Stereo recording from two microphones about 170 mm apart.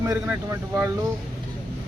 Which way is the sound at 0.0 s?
20° right (ahead or behind).